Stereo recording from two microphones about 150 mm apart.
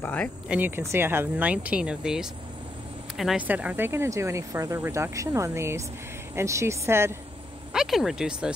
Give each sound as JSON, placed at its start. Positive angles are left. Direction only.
{"t": 0.0, "sound": "speech", "side_deg": 10}
{"t": 0.5, "sound": "speech", "side_deg": -15}
{"t": 7.7, "sound": "speech", "side_deg": 0}